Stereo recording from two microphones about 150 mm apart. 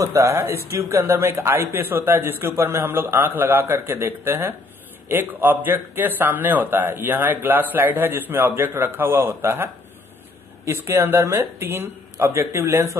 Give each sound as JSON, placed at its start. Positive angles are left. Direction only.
{"t": 0.0, "sound": "a man's voice", "side_deg": -20}